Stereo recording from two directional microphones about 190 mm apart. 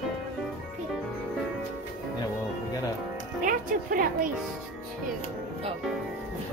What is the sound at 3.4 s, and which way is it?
Speech, 45° right (ahead or behind).